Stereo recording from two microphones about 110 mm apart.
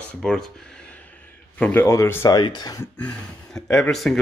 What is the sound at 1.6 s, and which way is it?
Speech, 15° left (ahead or behind).